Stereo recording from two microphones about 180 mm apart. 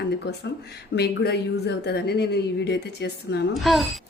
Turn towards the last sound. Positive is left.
turn(degrees=0)  # may be behind; listen again after turning